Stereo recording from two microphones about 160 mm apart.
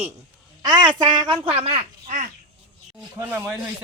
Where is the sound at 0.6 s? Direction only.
25° right (ahead or behind).